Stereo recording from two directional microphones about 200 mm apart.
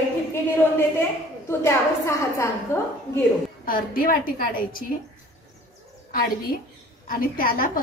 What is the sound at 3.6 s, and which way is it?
A woman's voice, 45° left (ahead or behind).